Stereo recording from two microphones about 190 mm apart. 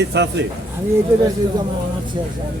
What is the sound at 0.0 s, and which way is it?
Speech, 65° right (ahead or behind).